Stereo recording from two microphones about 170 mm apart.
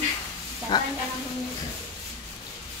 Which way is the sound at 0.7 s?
25° left (ahead or behind).